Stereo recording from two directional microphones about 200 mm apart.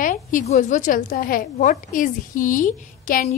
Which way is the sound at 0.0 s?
40° left (ahead or behind).